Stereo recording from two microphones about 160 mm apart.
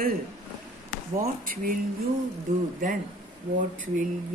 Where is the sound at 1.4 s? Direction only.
60° right (ahead or behind).